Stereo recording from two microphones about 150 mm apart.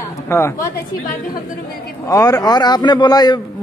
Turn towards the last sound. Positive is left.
turn(degrees=25)  # may be behind; listen again after turning